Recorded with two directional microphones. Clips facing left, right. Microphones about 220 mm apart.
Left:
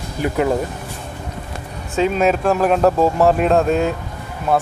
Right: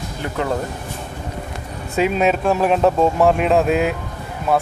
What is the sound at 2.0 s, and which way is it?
Speech, 5° right (ahead or behind).